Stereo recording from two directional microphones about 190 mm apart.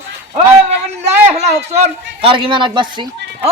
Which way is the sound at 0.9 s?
35° right (ahead or behind).